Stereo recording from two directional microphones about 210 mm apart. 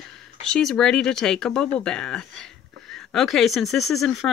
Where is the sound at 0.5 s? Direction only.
Centre (ahead or behind).